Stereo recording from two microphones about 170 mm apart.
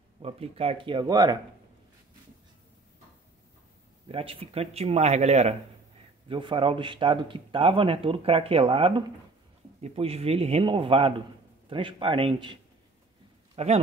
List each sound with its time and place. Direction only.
0.2 s speech: 35° right (ahead or behind)
4.1 s speech: 35° right (ahead or behind)
13.6 s speech: 40° right (ahead or behind)